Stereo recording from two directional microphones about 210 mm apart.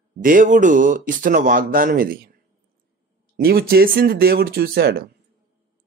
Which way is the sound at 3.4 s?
50° right (ahead or behind).